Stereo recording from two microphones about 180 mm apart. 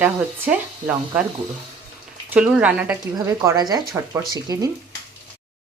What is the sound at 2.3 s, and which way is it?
A woman's voice, 5° right (ahead or behind).